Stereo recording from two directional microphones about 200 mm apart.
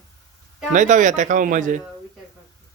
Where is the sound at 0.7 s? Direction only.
40° right (ahead or behind).